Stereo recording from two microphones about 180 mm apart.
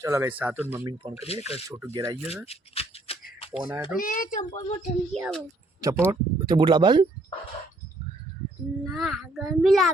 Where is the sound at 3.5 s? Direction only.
5° right (ahead or behind).